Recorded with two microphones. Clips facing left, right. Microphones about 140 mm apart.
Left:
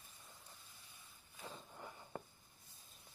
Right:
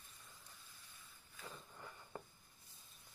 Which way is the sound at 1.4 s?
20° left (ahead or behind).